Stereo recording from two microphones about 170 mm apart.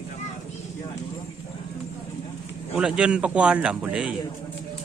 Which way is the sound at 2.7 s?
5° right (ahead or behind).